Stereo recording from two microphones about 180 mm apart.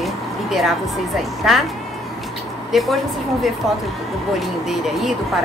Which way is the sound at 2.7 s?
Centre (ahead or behind).